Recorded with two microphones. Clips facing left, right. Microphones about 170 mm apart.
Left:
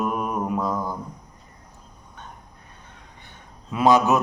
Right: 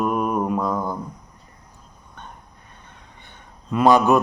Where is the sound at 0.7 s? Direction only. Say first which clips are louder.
Right 2 dB; 20° right (ahead or behind).